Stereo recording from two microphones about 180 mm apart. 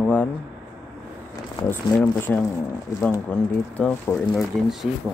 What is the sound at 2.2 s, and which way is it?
Speech, 10° left (ahead or behind).